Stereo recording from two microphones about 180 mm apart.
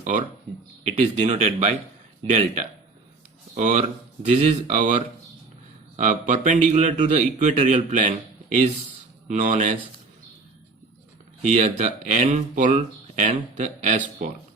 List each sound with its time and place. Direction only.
0.0 s a man's voice: 40° right (ahead or behind)
3.5 s a man's voice: 40° right (ahead or behind)
11.4 s a man's voice: 40° right (ahead or behind)